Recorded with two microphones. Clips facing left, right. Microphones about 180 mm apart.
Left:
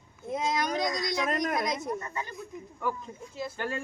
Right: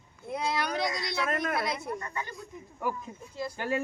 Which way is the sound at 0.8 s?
45° left (ahead or behind).